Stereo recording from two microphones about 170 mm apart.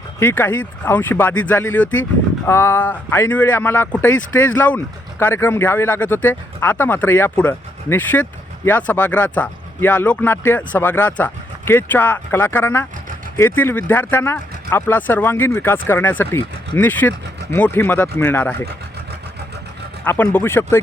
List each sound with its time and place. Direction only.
0.2 s speech: 10° left (ahead or behind)
20.1 s speech: 10° left (ahead or behind)